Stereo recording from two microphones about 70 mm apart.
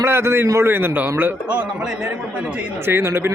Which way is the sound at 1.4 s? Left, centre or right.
Centre.